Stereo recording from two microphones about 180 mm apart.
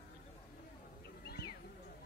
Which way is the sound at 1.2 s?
65° left (ahead or behind).